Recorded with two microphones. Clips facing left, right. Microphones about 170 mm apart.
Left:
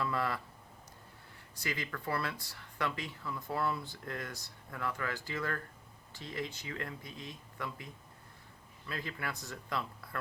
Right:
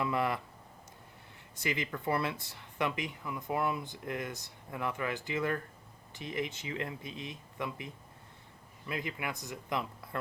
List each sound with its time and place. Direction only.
0.0 s speech: 20° right (ahead or behind)
1.5 s speech: 20° right (ahead or behind)
8.9 s speech: 15° right (ahead or behind)